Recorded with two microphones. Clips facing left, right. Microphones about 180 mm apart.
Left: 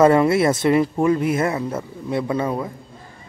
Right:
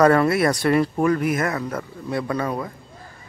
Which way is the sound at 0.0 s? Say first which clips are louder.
Left 2 dB; 20° left (ahead or behind).